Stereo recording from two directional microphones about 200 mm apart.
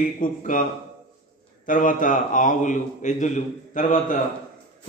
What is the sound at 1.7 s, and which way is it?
A man's voice, 40° left (ahead or behind).